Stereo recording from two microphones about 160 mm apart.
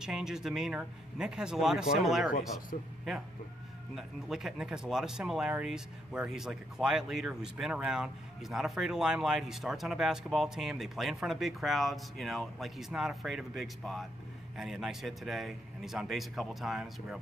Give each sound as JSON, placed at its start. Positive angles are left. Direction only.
{"t": 0.0, "sound": "speech", "side_deg": -5}
{"t": 2.7, "sound": "speech", "side_deg": 55}
{"t": 3.9, "sound": "speech", "side_deg": -5}